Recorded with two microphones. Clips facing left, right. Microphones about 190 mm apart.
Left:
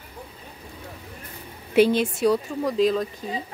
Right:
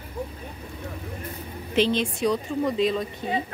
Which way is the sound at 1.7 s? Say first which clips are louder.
Left 4 dB; 10° left (ahead or behind).